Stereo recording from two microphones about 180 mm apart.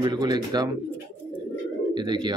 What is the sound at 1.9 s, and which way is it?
Speech, 25° right (ahead or behind).